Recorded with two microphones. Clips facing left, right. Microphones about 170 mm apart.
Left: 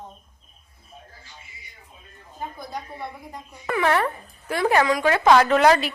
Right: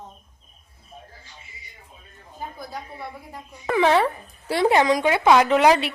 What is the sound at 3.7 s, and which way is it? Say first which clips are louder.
Speech: right 3 dB; 20° right (ahead or behind).